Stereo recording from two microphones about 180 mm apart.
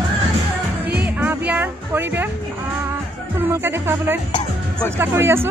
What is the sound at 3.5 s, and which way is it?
Music, 15° right (ahead or behind).